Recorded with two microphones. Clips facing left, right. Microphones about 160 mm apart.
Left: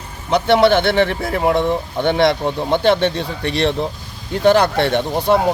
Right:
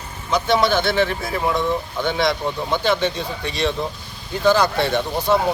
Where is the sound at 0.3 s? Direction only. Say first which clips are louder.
Left 5 dB; 65° left (ahead or behind).